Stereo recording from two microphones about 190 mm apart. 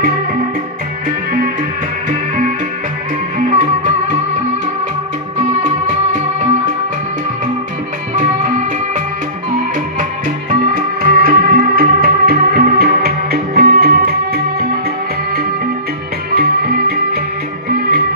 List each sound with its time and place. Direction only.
3.3 s music: 45° right (ahead or behind)
5.4 s music: 40° right (ahead or behind)
10.5 s music: 45° right (ahead or behind)
16.3 s music: 55° right (ahead or behind)